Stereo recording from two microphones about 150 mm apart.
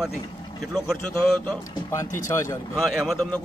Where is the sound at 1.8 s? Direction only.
20° left (ahead or behind).